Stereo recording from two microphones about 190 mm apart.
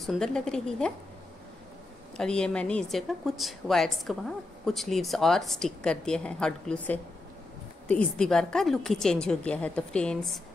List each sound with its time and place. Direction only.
0.0 s a woman's voice: centre (ahead or behind)
2.1 s a woman's voice: 5° left (ahead or behind)